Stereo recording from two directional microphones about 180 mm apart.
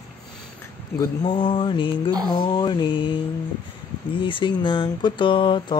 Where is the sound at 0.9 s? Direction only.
25° left (ahead or behind).